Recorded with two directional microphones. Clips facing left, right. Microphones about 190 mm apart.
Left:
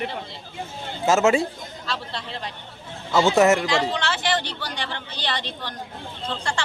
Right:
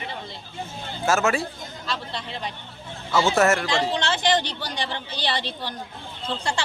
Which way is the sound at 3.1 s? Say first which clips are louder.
Left 3 dB; 15° left (ahead or behind).